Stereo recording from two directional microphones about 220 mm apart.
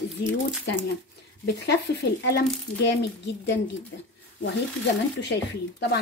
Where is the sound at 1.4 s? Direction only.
50° left (ahead or behind).